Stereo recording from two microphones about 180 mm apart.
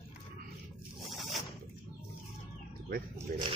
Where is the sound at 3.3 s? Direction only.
55° right (ahead or behind).